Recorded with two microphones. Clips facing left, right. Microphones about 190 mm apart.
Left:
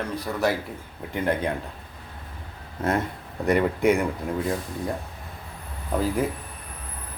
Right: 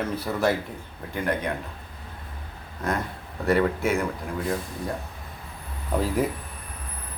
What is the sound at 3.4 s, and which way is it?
Speech, 15° left (ahead or behind).